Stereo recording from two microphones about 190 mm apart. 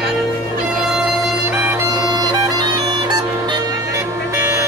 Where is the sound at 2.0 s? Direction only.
20° right (ahead or behind).